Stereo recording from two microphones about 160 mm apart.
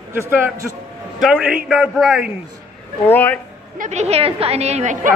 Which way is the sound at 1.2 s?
5° right (ahead or behind).